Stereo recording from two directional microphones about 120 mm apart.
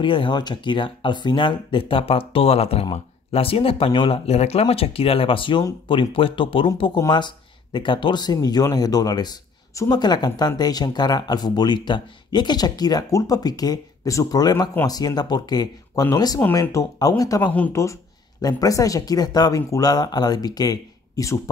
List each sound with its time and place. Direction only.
0.0 s speech: 45° left (ahead or behind); by 16.9 s 25° left (ahead or behind)
17.4 s speech: 15° left (ahead or behind)
18.4 s speech: 30° left (ahead or behind)